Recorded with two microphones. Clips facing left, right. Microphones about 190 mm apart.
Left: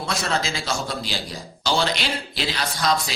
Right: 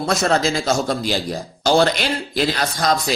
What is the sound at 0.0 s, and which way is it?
Speech, 45° right (ahead or behind).